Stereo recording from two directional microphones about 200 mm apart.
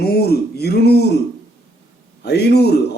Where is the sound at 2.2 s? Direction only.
55° left (ahead or behind).